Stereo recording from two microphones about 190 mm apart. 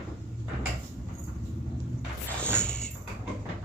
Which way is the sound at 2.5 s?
5° left (ahead or behind).